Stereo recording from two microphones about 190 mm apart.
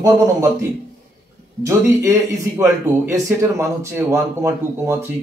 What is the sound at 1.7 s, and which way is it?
Speech, 15° right (ahead or behind).